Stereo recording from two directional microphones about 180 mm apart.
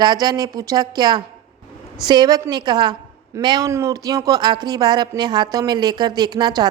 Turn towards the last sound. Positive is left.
turn(degrees=-20)  # may be behind; listen again after turning